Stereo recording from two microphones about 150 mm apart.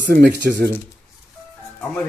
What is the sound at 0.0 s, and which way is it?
Speech, 85° right.